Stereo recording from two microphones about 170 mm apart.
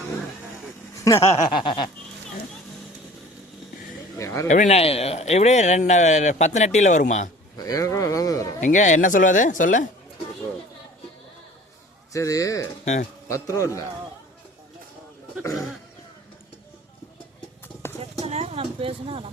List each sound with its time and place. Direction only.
1.0 s speech: 20° left (ahead or behind)
1.5 s speech: 30° left (ahead or behind)
4.2 s a sound: 20° left (ahead or behind)
4.4 s speech: 45° left (ahead or behind)
7.5 s a sound: 20° left (ahead or behind)
8.6 s speech: 45° left (ahead or behind)
12.1 s speech: 20° left (ahead or behind)
12.8 s speech: 45° left (ahead or behind)
13.2 s a man's voice: 20° left (ahead or behind)
18.0 s a sound: 40° right (ahead or behind)